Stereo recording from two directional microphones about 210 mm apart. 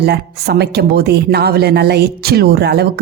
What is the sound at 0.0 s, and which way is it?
A woman's voice, 50° right (ahead or behind).